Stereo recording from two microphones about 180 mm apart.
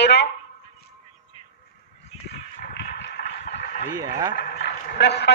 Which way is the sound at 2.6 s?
65° left (ahead or behind).